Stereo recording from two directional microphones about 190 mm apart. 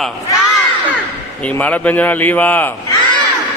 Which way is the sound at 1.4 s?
5° left (ahead or behind).